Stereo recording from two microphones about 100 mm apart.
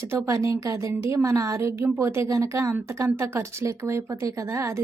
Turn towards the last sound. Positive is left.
turn(degrees=-30)  # may be behind; listen again after turning